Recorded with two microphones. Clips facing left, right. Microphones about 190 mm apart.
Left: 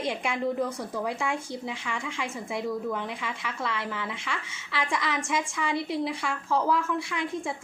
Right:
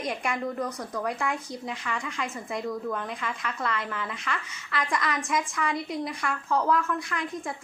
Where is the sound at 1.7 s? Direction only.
10° left (ahead or behind).